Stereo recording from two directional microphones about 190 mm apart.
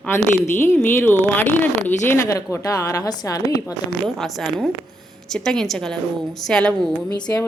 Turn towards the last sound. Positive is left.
turn(degrees=20)  # may be behind; listen again after turning